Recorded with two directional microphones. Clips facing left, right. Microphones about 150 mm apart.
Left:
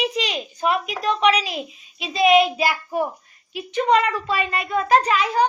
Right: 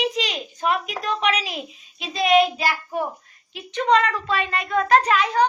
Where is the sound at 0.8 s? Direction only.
Centre (ahead or behind).